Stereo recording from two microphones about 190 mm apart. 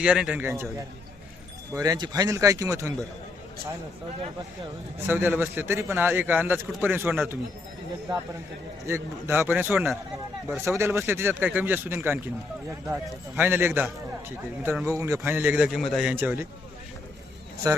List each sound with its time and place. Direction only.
0.0 s a man's voice: 5° right (ahead or behind)
1.7 s a man's voice: 20° right (ahead or behind)
5.0 s a man's voice: 10° right (ahead or behind)
8.9 s a man's voice: 15° right (ahead or behind)